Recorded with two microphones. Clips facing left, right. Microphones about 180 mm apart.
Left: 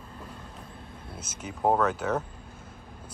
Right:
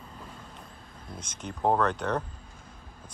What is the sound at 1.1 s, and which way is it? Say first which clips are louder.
Speech: right 1 dB; 5° left (ahead or behind).